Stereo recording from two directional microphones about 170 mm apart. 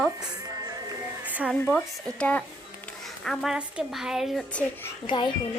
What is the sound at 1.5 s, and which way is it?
A woman's voice, 5° left (ahead or behind).